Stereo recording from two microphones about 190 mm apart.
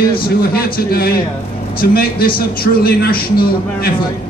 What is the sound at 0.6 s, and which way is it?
A man's voice, 55° left (ahead or behind).